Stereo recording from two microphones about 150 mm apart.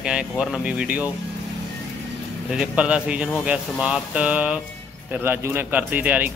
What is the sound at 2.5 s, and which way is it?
A man's voice, 5° right (ahead or behind).